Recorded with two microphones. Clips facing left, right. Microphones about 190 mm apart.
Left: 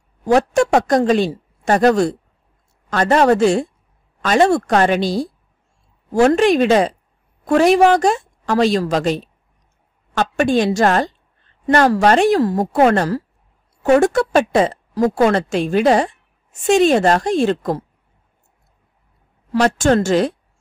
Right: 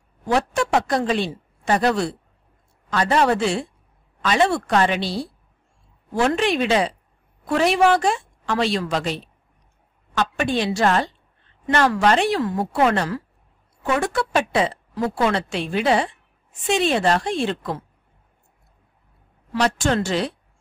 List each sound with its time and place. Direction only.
0.2 s a woman's voice: 45° left (ahead or behind)
19.5 s a woman's voice: 45° left (ahead or behind)